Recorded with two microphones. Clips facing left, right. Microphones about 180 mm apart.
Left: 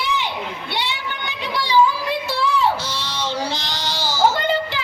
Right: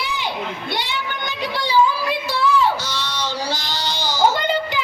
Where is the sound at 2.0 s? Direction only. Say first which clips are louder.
Right 1 dB; 30° left (ahead or behind).